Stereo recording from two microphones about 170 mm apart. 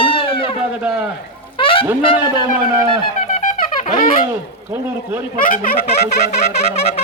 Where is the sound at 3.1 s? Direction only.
50° left (ahead or behind).